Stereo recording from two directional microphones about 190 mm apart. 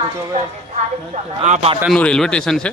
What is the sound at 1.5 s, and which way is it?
Speech, 30° right (ahead or behind).